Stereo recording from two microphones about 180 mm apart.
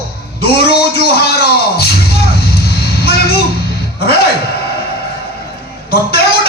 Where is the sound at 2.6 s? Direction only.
60° left (ahead or behind).